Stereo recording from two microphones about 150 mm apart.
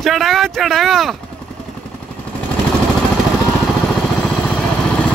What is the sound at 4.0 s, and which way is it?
Vehicle, 5° left (ahead or behind).